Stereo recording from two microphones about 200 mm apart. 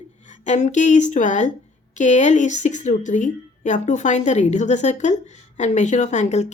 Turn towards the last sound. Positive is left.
turn(degrees=35)  # may be behind; listen again after turning